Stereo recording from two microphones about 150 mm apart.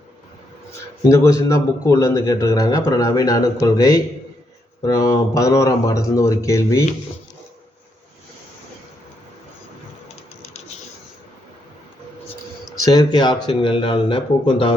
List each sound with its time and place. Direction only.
1.0 s a man's voice: 20° left (ahead or behind)
12.8 s speech: 25° left (ahead or behind)